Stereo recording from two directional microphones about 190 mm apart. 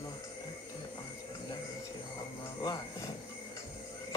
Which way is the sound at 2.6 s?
20° left (ahead or behind).